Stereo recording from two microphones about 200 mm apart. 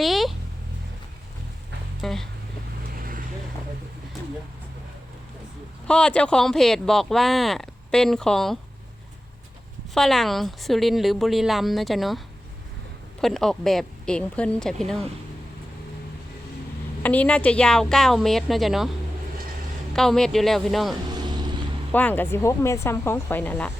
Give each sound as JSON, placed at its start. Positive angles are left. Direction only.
{"t": 0.0, "sound": "a sound", "side_deg": 0}
{"t": 2.0, "sound": "speech", "side_deg": 0}
{"t": 5.9, "sound": "speech", "side_deg": 5}
{"t": 9.9, "sound": "speech", "side_deg": 0}
{"t": 13.2, "sound": "speech", "side_deg": 0}
{"t": 17.0, "sound": "speech", "side_deg": 5}
{"t": 19.9, "sound": "speech", "side_deg": 0}
{"t": 21.1, "sound": "vehicle", "side_deg": -20}
{"t": 21.9, "sound": "speech", "side_deg": 10}